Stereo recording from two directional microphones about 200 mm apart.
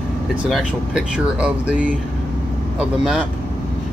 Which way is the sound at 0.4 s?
5° right (ahead or behind).